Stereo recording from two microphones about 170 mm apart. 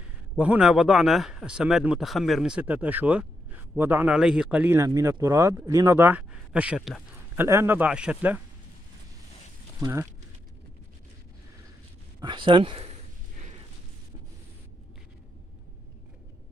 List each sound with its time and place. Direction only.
0.4 s speech: 5° right (ahead or behind)
9.8 s speech: 15° right (ahead or behind)
12.2 s speech: 25° right (ahead or behind)